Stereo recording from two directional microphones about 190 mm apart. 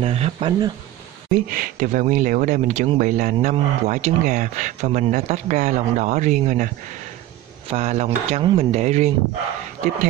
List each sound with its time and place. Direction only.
0.0 s speech: 30° right (ahead or behind)
1.5 s speech: 45° right (ahead or behind)
3.3 s speech: 35° right (ahead or behind)
7.7 s speech: 35° right (ahead or behind)